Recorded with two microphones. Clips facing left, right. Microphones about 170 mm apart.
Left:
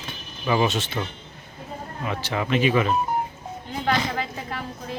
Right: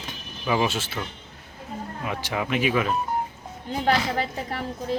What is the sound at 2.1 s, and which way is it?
Speech, 10° right (ahead or behind).